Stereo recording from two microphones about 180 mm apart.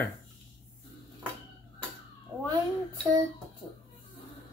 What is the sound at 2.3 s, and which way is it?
Cat, 10° right (ahead or behind).